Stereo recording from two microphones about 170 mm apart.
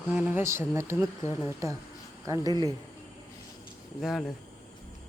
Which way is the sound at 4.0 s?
Centre (ahead or behind).